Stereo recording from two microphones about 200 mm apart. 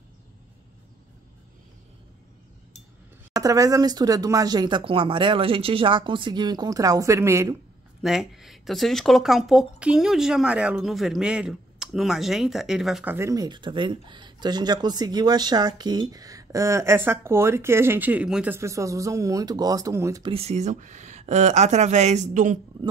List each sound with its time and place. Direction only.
3.3 s speech: 15° right (ahead or behind)
8.0 s speech: centre (ahead or behind); by 22.6 s 40° right (ahead or behind)